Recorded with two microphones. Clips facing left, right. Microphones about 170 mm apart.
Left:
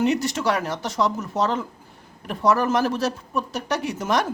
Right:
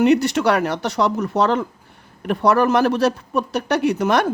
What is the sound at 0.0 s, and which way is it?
Speech, 65° right (ahead or behind).